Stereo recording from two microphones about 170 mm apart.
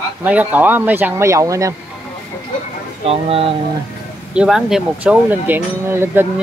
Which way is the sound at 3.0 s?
35° right (ahead or behind).